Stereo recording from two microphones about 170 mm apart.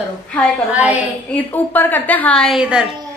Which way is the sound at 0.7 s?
10° right (ahead or behind).